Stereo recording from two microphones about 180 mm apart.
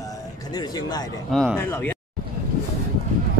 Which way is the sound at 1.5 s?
10° left (ahead or behind).